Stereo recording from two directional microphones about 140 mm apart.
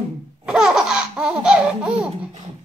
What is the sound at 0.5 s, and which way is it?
Laughter, 5° right (ahead or behind).